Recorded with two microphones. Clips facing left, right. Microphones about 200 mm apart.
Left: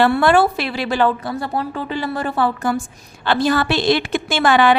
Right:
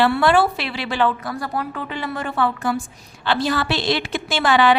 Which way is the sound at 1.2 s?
25° left (ahead or behind).